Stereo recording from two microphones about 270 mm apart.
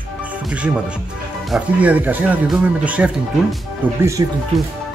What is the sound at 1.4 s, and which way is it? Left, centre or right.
Speech, centre.